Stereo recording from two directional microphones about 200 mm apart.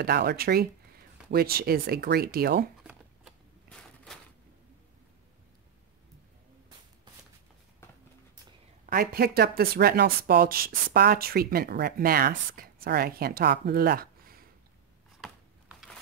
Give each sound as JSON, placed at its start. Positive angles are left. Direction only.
{"t": 0.0, "sound": "speech", "side_deg": -50}
{"t": 2.8, "sound": "shuffling cards", "side_deg": -5}
{"t": 3.6, "sound": "a sound", "side_deg": 5}
{"t": 8.8, "sound": "speech", "side_deg": -50}